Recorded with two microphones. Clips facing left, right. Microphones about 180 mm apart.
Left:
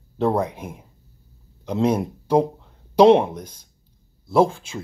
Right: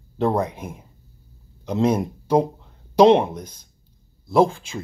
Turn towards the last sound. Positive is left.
turn(degrees=5)  # may be behind; listen again after turning